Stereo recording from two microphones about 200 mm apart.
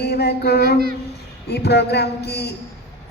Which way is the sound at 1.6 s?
55° left (ahead or behind).